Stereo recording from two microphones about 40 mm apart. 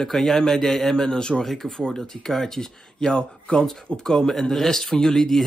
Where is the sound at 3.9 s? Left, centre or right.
Left.